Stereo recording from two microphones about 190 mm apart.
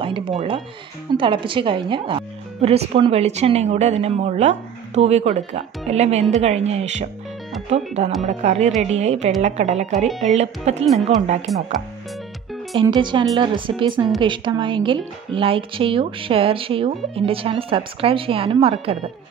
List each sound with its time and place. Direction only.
0.0 s speech: 30° right (ahead or behind)
11.5 s speech: centre (ahead or behind)
12.7 s speech: 25° right (ahead or behind)